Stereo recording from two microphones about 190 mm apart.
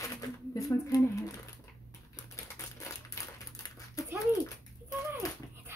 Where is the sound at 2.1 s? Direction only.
15° left (ahead or behind).